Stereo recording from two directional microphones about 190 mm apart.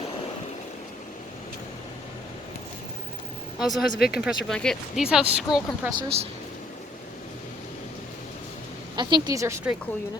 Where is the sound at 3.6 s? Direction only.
Centre (ahead or behind).